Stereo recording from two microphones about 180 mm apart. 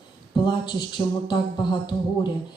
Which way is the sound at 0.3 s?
25° left (ahead or behind).